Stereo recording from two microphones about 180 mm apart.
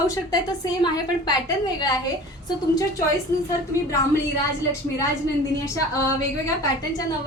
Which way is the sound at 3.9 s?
15° left (ahead or behind).